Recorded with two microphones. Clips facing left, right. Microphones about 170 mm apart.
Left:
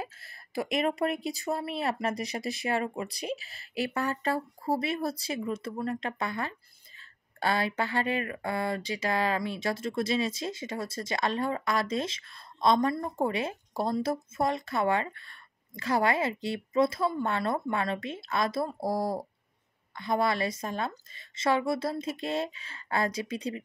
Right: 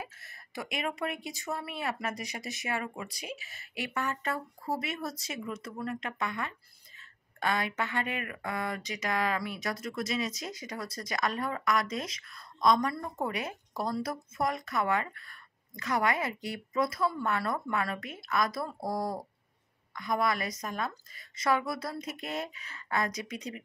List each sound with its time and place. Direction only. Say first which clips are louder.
0.0 s speech: left 4 dB; 30° left (ahead or behind)